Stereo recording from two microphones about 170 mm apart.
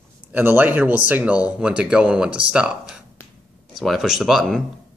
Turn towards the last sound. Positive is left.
turn(degrees=0)  # may be behind; listen again after turning